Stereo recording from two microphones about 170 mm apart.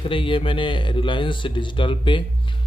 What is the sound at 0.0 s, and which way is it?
Speech, 30° left (ahead or behind).